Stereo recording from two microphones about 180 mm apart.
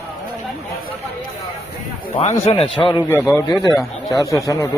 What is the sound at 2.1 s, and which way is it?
Speech, 35° left (ahead or behind).